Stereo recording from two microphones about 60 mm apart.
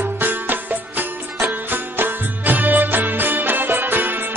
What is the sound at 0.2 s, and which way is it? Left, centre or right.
Music, right.